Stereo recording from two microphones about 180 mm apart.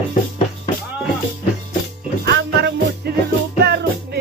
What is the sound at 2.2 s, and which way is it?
Music, 65° right (ahead or behind).